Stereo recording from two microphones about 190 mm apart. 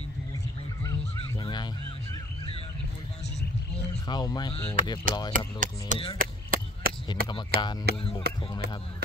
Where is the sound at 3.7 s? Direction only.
20° left (ahead or behind).